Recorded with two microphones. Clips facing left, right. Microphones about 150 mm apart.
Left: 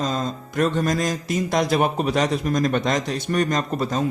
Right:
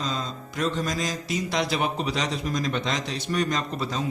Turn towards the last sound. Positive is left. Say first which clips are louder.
# left 5 dB
turn(degrees=50)  # may be behind; listen again after turning